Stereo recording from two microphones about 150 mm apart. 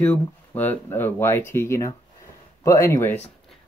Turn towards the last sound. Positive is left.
turn(degrees=20)  # may be behind; listen again after turning